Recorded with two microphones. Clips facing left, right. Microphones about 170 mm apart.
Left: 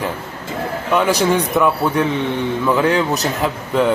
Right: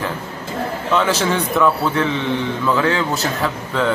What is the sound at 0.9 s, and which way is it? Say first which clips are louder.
A man's voice: left 3 dB; 15° left (ahead or behind).